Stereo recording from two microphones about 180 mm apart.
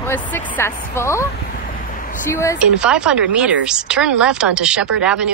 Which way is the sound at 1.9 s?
50° left (ahead or behind).